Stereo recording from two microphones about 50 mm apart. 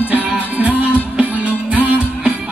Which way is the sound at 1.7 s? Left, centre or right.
Right.